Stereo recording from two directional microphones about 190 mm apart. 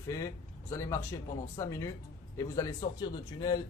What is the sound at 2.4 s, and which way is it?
A man's voice, 20° left (ahead or behind).